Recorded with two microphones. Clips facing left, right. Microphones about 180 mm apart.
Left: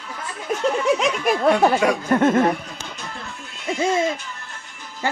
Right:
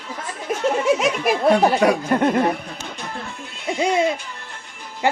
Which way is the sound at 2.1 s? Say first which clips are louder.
Left 1 dB; 15° right (ahead or behind).